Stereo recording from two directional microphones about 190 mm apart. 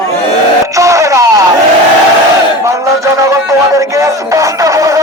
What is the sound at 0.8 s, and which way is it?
Speech, 15° right (ahead or behind).